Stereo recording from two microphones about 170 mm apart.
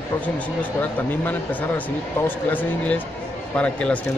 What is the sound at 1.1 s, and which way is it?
Speech, 10° left (ahead or behind).